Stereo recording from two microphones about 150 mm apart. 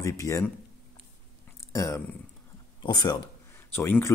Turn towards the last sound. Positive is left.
turn(degrees=15)  # may be behind; listen again after turning